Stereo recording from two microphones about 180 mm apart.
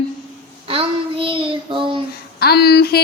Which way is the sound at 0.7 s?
30° right (ahead or behind).